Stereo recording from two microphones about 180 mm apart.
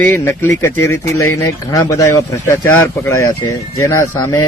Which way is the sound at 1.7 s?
20° left (ahead or behind).